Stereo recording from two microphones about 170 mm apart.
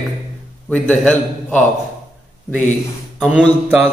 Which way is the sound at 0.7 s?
10° left (ahead or behind).